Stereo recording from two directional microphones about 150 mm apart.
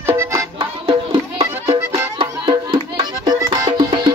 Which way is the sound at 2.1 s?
35° right (ahead or behind).